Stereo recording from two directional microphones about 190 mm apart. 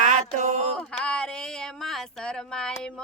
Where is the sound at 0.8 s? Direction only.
5° left (ahead or behind).